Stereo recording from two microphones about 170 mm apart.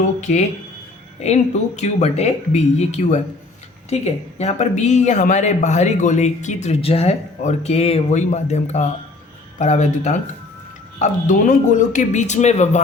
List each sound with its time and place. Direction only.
0.3 s speech: 50° left (ahead or behind)